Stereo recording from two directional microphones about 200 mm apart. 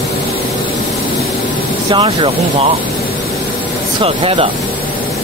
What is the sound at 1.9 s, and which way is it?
Speech, 25° right (ahead or behind).